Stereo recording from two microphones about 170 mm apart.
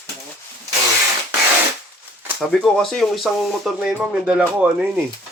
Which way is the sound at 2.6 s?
Centre (ahead or behind).